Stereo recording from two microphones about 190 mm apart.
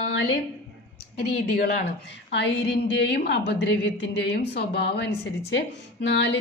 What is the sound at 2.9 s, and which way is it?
A woman's voice, 60° left (ahead or behind).